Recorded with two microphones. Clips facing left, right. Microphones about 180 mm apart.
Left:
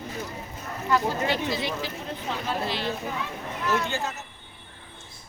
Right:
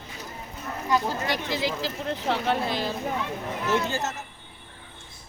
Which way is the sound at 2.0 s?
80° right.